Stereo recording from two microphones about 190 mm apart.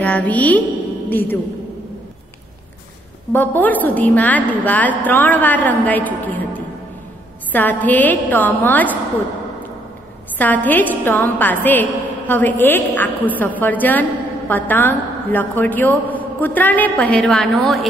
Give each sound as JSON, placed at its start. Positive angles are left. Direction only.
{"t": 0.0, "sound": "a woman's voice", "side_deg": 10}
{"t": 3.3, "sound": "a woman's voice", "side_deg": 10}
{"t": 7.5, "sound": "a woman's voice", "side_deg": 10}
{"t": 10.3, "sound": "a woman's voice", "side_deg": 10}